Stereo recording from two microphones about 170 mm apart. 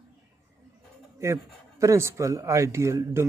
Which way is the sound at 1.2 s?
15° right (ahead or behind).